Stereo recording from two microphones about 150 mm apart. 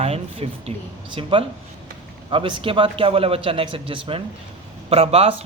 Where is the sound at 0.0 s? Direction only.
45° right (ahead or behind).